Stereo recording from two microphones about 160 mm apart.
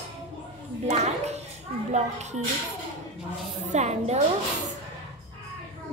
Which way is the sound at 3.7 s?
45° right (ahead or behind).